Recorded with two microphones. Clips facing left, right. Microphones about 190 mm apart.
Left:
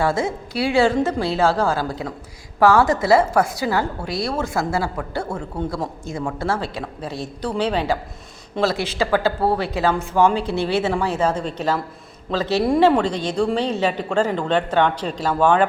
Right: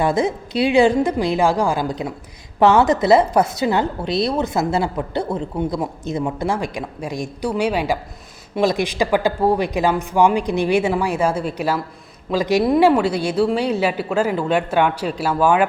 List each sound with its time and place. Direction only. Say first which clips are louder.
0.0 s a woman's voice: right 2 dB; 20° right (ahead or behind)